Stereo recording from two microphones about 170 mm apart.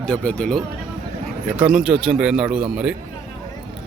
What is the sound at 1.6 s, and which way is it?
Speech, 5° right (ahead or behind).